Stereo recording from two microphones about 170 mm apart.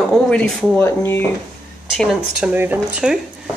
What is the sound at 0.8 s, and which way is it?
Speech, 15° left (ahead or behind).